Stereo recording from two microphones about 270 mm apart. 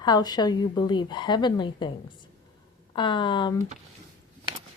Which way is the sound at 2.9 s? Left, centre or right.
Centre.